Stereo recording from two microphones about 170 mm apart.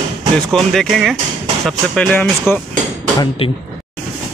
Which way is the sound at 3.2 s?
30° left (ahead or behind).